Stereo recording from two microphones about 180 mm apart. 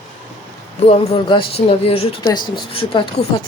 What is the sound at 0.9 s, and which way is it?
Speech, 30° left (ahead or behind).